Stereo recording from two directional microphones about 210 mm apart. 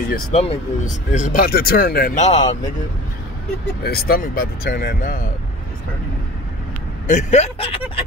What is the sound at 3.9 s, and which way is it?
Speech, 45° left (ahead or behind).